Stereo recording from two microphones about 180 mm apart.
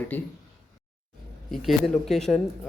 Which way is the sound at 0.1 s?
10° left (ahead or behind).